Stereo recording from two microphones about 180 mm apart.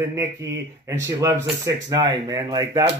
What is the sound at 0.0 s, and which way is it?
Speech, 15° right (ahead or behind).